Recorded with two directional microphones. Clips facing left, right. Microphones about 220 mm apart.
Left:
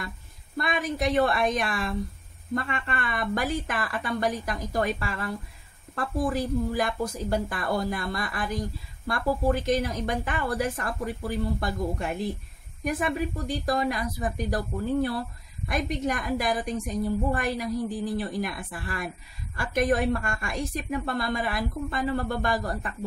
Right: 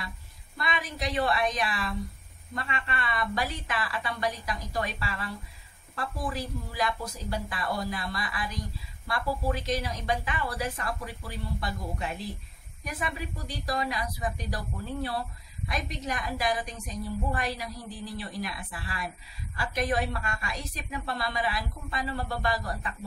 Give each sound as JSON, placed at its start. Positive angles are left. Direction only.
{"t": 0.6, "sound": "a woman's voice", "side_deg": 50}